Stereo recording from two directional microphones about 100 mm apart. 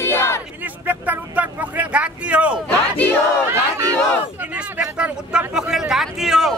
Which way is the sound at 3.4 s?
25° right (ahead or behind).